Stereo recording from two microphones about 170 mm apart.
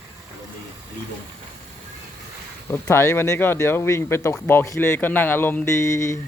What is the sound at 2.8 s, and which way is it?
Speech, 15° left (ahead or behind).